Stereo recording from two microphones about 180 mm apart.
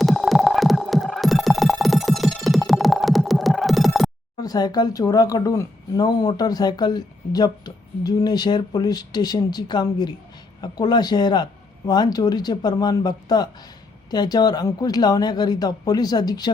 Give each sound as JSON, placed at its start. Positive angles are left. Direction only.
{"t": 0.0, "sound": "music", "side_deg": 0}
{"t": 4.4, "sound": "speech", "side_deg": 20}